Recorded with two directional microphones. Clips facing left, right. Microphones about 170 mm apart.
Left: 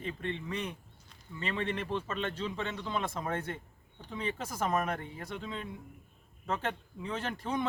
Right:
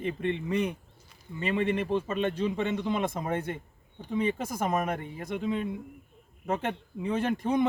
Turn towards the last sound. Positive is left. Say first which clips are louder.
# right 8 dB
turn(degrees=-20)  # may be behind; listen again after turning